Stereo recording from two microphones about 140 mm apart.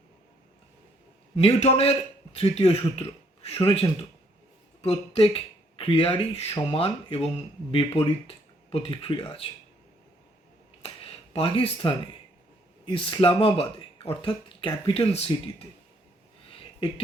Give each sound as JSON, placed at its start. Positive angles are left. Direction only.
{"t": 1.4, "sound": "a man's voice", "side_deg": 50}
{"t": 10.8, "sound": "a sound", "side_deg": 45}
{"t": 12.8, "sound": "speech", "side_deg": 40}